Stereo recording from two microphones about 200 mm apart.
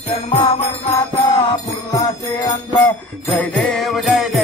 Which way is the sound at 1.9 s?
15° left (ahead or behind).